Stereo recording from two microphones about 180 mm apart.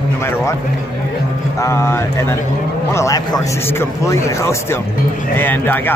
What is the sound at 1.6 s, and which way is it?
A man's voice, 15° left (ahead or behind).